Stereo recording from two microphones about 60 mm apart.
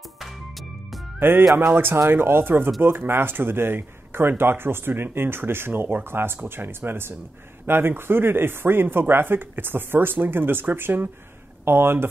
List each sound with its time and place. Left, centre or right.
0.2 s music: centre
1.2 s speech: right